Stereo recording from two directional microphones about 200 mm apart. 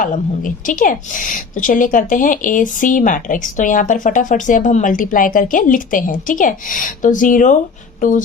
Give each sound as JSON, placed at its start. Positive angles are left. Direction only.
{"t": 0.0, "sound": "a woman's voice", "side_deg": 40}